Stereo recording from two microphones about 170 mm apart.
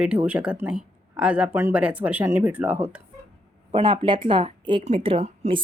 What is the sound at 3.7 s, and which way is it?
A woman's voice, 30° right (ahead or behind).